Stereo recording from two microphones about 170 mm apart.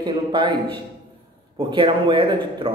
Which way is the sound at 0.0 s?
30° right (ahead or behind).